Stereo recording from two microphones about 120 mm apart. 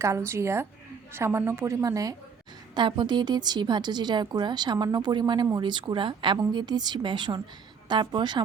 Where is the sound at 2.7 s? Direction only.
40° right (ahead or behind).